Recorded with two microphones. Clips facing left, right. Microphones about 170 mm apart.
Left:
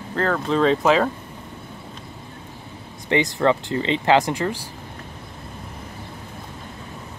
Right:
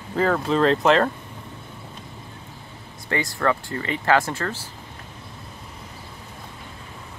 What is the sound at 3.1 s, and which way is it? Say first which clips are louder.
Speech: left 4 dB; 20° left (ahead or behind).